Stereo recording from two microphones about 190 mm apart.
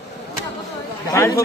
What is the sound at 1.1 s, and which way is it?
Speech, 15° left (ahead or behind).